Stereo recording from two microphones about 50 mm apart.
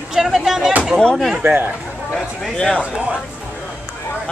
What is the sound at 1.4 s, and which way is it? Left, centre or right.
Speech, right.